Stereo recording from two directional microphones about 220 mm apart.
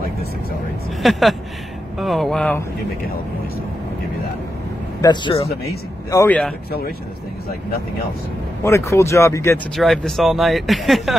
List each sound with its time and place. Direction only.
1.0 s speech: centre (ahead or behind)
5.0 s a man's voice: 20° left (ahead or behind)
6.0 s speech: 10° left (ahead or behind)
8.6 s speech: 10° left (ahead or behind)
9.8 s speech: centre (ahead or behind)